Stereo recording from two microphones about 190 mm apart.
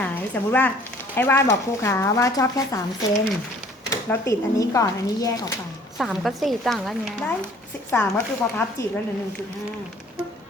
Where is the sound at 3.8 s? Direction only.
15° left (ahead or behind).